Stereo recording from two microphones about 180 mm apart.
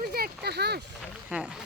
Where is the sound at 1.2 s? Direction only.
5° right (ahead or behind).